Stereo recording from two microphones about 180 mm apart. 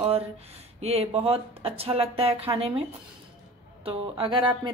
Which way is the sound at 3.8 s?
30° right (ahead or behind).